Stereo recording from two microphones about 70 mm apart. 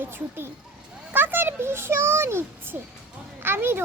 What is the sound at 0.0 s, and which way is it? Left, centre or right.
A child's voice, right.